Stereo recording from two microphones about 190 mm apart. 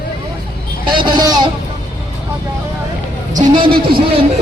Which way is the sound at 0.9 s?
25° right (ahead or behind).